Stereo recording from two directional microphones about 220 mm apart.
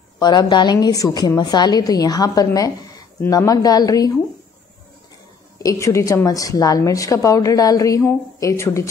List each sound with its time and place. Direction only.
0.2 s a woman's voice: 20° left (ahead or behind)
5.6 s a woman's voice: 15° left (ahead or behind)